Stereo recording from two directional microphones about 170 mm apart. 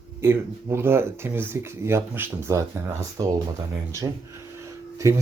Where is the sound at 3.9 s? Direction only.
15° right (ahead or behind).